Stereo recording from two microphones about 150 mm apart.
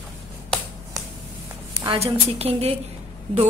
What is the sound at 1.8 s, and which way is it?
Speech, 40° right (ahead or behind).